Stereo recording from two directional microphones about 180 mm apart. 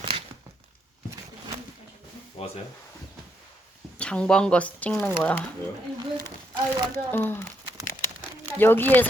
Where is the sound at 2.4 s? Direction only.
35° left (ahead or behind).